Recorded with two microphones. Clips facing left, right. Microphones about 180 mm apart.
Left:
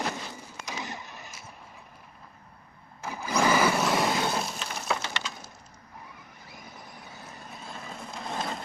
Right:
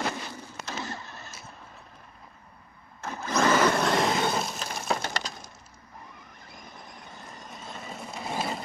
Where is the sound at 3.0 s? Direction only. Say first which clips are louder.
Right 1 dB; 10° left (ahead or behind).